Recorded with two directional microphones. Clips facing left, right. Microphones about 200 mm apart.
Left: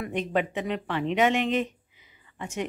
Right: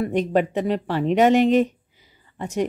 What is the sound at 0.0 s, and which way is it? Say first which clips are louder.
Speech: right 7 dB; 40° right (ahead or behind).